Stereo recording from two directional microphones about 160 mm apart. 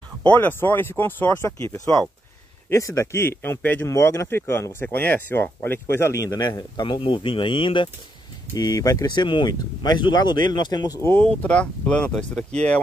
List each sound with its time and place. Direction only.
0.2 s speech: 10° left (ahead or behind)